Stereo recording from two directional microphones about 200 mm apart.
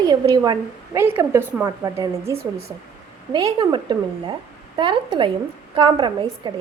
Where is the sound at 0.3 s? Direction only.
20° right (ahead or behind).